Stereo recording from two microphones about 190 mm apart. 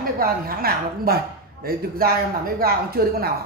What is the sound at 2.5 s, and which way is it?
Speech, 55° right (ahead or behind).